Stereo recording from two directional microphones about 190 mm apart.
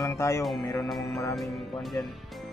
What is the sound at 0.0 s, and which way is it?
Speech, 15° left (ahead or behind).